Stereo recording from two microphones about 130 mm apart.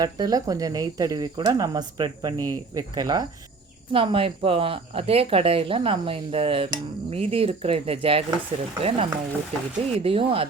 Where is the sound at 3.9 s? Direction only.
45° right (ahead or behind).